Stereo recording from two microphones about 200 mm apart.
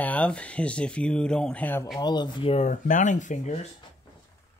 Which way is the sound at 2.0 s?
20° left (ahead or behind).